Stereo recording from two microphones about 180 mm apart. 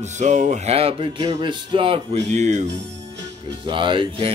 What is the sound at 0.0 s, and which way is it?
Speech, 40° right (ahead or behind).